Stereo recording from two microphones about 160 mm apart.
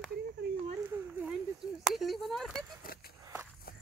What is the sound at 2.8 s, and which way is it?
Speech, 65° left (ahead or behind).